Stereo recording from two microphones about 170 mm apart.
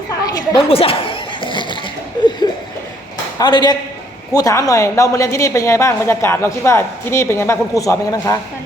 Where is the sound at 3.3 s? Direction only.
25° left (ahead or behind).